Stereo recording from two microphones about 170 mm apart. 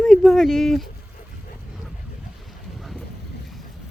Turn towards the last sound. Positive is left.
turn(degrees=0)  # may be behind; listen again after turning